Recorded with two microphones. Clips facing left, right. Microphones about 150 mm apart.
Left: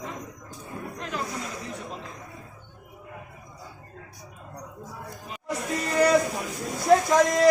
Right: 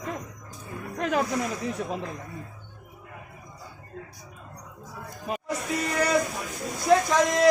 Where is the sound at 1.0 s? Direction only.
65° right (ahead or behind).